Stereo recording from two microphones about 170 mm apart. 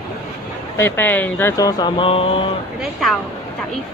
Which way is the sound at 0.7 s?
15° left (ahead or behind).